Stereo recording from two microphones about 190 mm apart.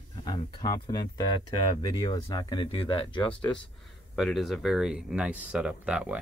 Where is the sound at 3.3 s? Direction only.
5° left (ahead or behind).